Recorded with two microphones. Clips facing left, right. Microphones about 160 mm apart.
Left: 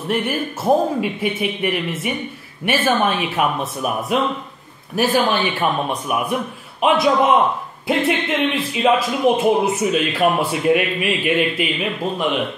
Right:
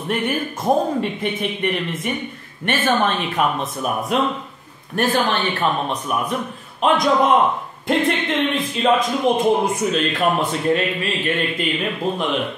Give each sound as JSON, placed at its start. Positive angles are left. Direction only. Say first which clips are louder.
{"t": 0.1, "sound": "a man's voice", "louder": "left 1 dB", "side_deg": 5}